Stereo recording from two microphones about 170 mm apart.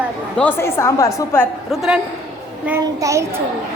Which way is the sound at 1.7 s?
Centre (ahead or behind).